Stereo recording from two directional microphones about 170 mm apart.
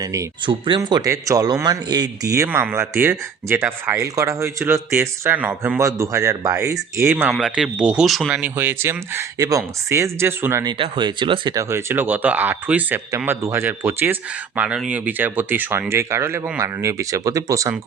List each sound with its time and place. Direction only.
0.0 s speech: 20° right (ahead or behind)